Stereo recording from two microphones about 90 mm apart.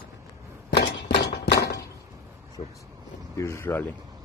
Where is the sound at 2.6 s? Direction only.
75° left (ahead or behind).